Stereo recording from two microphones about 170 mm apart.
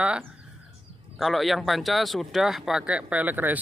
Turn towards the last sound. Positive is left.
turn(degrees=-10)  # may be behind; listen again after turning